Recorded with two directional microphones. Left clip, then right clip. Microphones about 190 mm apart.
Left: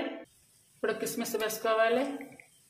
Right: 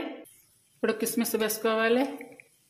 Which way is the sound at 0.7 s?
35° right (ahead or behind).